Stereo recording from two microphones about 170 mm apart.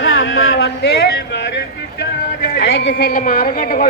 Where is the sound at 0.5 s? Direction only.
90° left.